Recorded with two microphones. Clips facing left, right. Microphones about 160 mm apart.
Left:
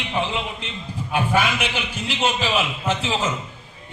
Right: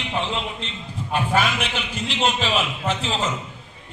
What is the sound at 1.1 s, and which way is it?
A man's voice, centre (ahead or behind).